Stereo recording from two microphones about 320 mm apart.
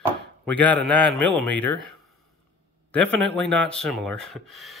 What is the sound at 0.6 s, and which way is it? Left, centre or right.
Speech, centre.